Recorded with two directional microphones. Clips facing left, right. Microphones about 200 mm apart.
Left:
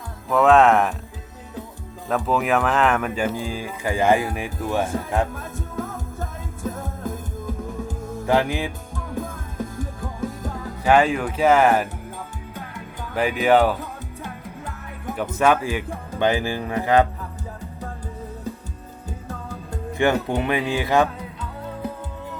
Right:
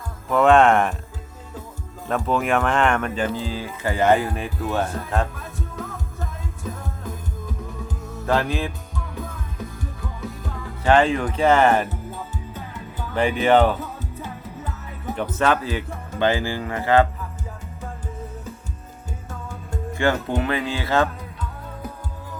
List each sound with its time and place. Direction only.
0.3 s speech: centre (ahead or behind)
2.0 s speech: centre (ahead or behind)
5.3 s music: 50° left (ahead or behind)
8.3 s speech: 15° left (ahead or behind)
9.1 s music: 50° left (ahead or behind)
10.8 s speech: 10° left (ahead or behind)
12.5 s music: 10° left (ahead or behind)
16.1 s speech: 15° left (ahead or behind)
19.3 s music: 35° left (ahead or behind)
19.9 s music: 15° left (ahead or behind)
20.4 s speech: 15° left (ahead or behind)